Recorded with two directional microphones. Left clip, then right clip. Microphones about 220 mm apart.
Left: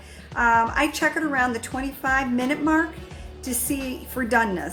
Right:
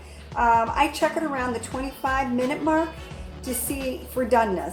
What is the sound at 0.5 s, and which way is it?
A woman's voice, 45° left (ahead or behind).